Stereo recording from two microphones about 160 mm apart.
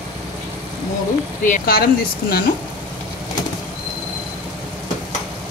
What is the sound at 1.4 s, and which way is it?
Speech, 60° left (ahead or behind).